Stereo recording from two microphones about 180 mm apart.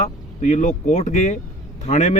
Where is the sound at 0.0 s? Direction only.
40° left (ahead or behind).